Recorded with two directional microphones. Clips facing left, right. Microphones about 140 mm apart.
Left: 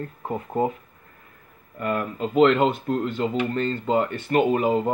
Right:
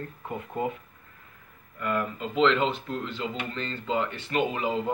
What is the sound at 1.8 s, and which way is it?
Speech, 50° left (ahead or behind).